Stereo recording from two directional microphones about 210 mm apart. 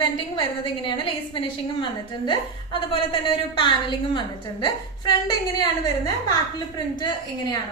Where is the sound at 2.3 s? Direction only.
25° left (ahead or behind).